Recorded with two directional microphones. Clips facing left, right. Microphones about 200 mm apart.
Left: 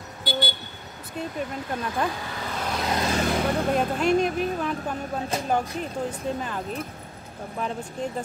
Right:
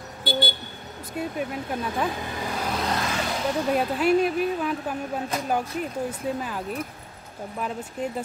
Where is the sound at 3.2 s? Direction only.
55° left (ahead or behind).